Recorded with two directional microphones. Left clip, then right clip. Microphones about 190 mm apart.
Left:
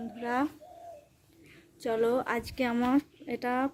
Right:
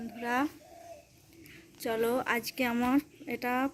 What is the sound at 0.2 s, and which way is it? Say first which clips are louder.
Speech: even; centre (ahead or behind).